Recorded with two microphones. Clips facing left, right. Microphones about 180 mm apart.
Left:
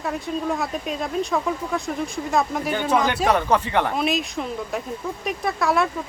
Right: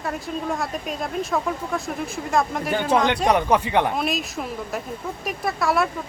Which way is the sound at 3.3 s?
15° right (ahead or behind).